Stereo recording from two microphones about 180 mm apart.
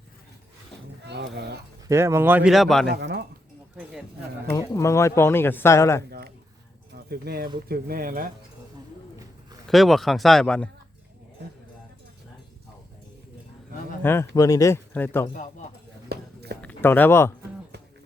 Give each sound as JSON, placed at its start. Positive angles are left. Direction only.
{"t": 1.0, "sound": "a sound", "side_deg": -70}
{"t": 1.9, "sound": "speech", "side_deg": -15}
{"t": 2.5, "sound": "speech", "side_deg": 0}
{"t": 2.9, "sound": "speech", "side_deg": -70}
{"t": 4.5, "sound": "speech", "side_deg": 15}
{"t": 6.0, "sound": "a sound", "side_deg": -65}
{"t": 6.9, "sound": "speech", "side_deg": -60}
{"t": 9.6, "sound": "speech", "side_deg": 0}
{"t": 14.0, "sound": "speech", "side_deg": 15}
{"t": 15.3, "sound": "speech", "side_deg": 45}
{"t": 16.0, "sound": "clip-clop", "side_deg": -60}
{"t": 16.6, "sound": "speech", "side_deg": 10}